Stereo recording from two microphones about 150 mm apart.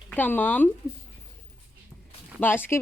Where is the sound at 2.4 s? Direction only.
15° left (ahead or behind).